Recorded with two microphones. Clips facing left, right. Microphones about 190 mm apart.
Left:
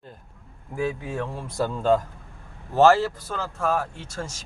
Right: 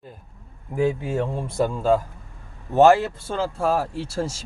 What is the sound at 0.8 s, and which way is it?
Speech, 25° right (ahead or behind).